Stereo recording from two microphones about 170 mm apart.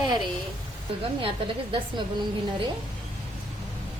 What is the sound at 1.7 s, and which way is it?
Speech, 25° right (ahead or behind).